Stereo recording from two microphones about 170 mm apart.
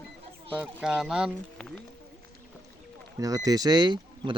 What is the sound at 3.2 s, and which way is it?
Speech, 20° right (ahead or behind).